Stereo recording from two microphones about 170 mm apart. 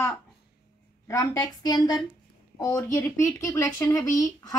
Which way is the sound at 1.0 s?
20° left (ahead or behind).